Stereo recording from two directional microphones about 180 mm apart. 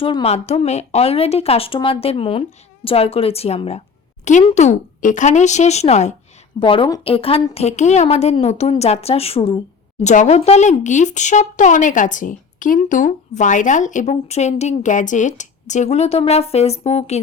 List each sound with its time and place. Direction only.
0.0 s speech: 30° left (ahead or behind)